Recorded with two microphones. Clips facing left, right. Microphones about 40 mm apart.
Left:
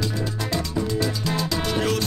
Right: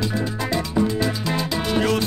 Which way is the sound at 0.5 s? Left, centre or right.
Centre.